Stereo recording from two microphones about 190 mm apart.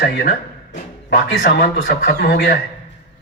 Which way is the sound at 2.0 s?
55° left (ahead or behind).